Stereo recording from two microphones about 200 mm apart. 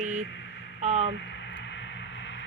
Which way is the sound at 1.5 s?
65° left (ahead or behind).